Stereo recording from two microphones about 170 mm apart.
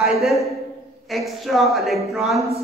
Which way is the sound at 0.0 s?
Centre (ahead or behind).